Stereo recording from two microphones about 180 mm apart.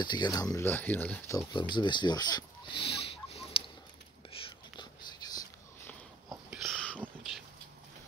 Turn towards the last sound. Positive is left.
turn(degrees=-5)  # may be behind; listen again after turning